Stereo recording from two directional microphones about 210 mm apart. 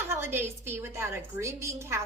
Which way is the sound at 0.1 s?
10° right (ahead or behind).